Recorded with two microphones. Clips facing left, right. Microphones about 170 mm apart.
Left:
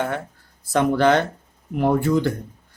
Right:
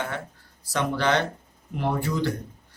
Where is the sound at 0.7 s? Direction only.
50° left (ahead or behind).